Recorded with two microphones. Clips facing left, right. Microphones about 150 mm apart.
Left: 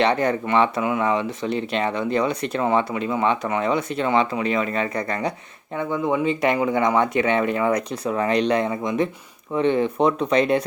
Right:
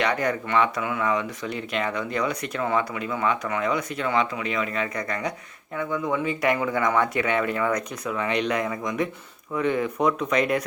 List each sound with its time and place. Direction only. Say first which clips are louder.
0.0 s speech: left 5 dB; 30° left (ahead or behind)